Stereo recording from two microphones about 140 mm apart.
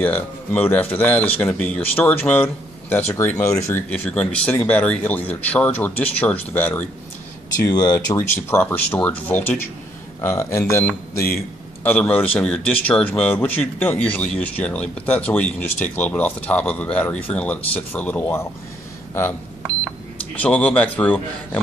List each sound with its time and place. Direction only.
0.0 s speech: 10° left (ahead or behind)
8.2 s speech: 15° left (ahead or behind)
20.3 s speech: 10° left (ahead or behind)